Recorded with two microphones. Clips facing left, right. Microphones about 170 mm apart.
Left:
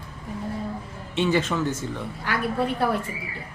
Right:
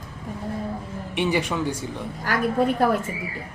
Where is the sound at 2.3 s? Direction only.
40° right (ahead or behind).